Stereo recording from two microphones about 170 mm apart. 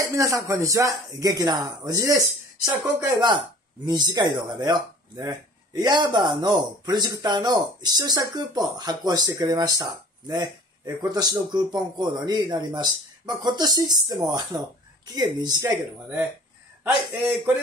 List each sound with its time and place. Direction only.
0.1 s a man's voice: 20° right (ahead or behind)